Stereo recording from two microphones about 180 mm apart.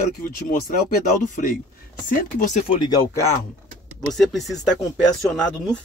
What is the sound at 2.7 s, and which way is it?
Speech, 20° left (ahead or behind).